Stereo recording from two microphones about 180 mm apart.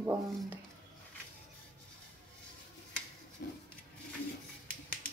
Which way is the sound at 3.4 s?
55° left (ahead or behind).